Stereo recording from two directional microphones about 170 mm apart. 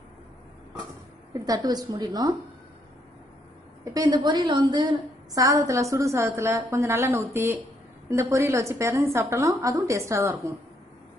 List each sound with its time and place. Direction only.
1.3 s a woman's voice: 20° right (ahead or behind)
3.8 s a woman's voice: 20° right (ahead or behind)